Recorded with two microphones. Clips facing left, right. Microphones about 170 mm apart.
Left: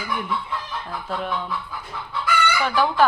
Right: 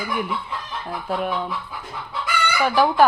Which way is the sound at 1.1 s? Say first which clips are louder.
Right 4 dB; 10° right (ahead or behind).